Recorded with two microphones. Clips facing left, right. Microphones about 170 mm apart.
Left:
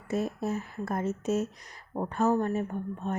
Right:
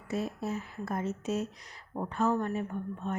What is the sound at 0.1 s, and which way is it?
Speech, 50° left (ahead or behind).